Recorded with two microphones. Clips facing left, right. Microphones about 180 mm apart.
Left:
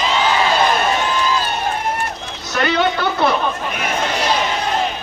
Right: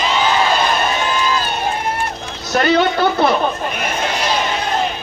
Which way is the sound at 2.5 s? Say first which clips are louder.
Right 3 dB; 40° right (ahead or behind).